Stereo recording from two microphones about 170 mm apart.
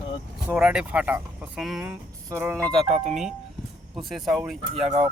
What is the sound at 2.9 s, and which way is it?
Speech, 45° right (ahead or behind).